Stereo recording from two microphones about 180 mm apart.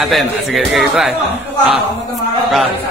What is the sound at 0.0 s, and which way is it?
Speech, centre (ahead or behind).